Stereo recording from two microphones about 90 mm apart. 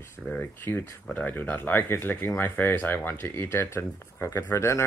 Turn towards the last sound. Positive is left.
turn(degrees=30)  # may be behind; listen again after turning